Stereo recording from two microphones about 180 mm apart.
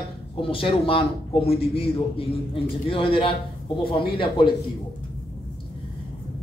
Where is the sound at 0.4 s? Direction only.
30° left (ahead or behind).